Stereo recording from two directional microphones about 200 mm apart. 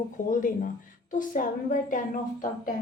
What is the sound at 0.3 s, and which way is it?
Speech, 40° left (ahead or behind).